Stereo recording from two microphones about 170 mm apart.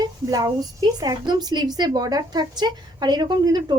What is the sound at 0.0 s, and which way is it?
A woman's voice, 25° right (ahead or behind).